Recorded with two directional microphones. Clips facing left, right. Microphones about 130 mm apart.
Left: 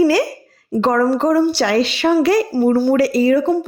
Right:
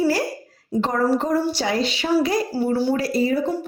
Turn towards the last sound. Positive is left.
turn(degrees=75)  # may be behind; listen again after turning